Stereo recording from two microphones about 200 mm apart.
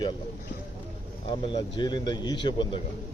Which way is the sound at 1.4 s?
25° left (ahead or behind).